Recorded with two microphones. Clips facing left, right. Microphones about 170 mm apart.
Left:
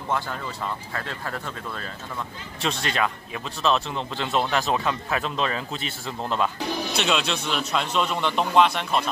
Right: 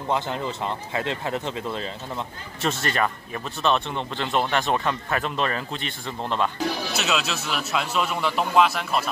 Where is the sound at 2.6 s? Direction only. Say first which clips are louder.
Right 1 dB; centre (ahead or behind).